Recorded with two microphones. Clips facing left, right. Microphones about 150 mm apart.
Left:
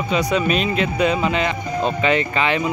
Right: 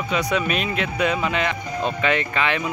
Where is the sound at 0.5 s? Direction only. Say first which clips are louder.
Left 4 dB; 60° right (ahead or behind).